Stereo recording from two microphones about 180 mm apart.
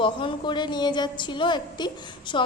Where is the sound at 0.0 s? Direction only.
25° left (ahead or behind).